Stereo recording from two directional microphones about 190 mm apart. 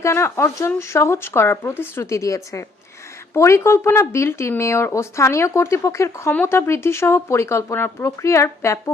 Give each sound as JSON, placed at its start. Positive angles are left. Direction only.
{"t": 0.0, "sound": "speech", "side_deg": 15}